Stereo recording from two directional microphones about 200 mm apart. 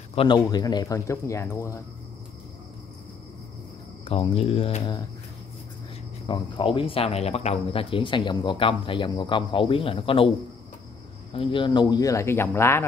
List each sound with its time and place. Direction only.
0.1 s speech: 25° left (ahead or behind)
4.0 s speech: 30° left (ahead or behind)
6.2 s speech: 25° left (ahead or behind)
11.3 s speech: 25° left (ahead or behind)